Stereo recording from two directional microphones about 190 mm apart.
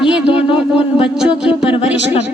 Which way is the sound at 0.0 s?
5° right (ahead or behind).